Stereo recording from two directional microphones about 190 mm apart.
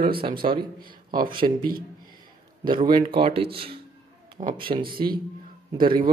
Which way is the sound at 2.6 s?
25° right (ahead or behind).